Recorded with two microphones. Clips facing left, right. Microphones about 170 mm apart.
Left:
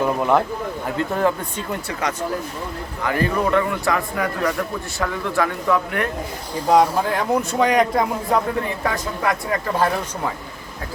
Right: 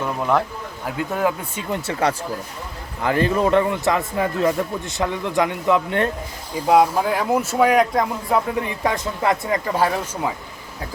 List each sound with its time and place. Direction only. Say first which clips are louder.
0.2 s speech: even; 5° left (ahead or behind)
0.9 s speech: left 1 dB; 10° right (ahead or behind)
1.7 s speech: right 5 dB; 30° right (ahead or behind)
6.7 s speech: even; 5° right (ahead or behind)
8.8 s speech: right 1 dB; 20° right (ahead or behind)
9.7 s speech: even; 10° right (ahead or behind)